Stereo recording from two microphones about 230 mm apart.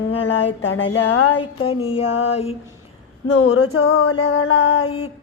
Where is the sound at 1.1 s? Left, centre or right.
Left.